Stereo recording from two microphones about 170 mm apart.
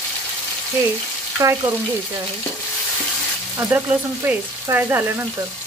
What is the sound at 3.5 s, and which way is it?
Frying, 10° right (ahead or behind).